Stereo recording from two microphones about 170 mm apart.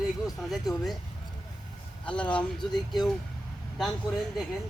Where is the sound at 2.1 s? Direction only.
5° left (ahead or behind).